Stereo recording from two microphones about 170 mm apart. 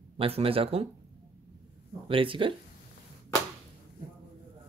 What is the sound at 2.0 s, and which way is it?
Speech, 30° right (ahead or behind).